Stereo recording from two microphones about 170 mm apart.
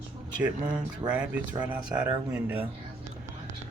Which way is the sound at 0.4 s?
5° right (ahead or behind).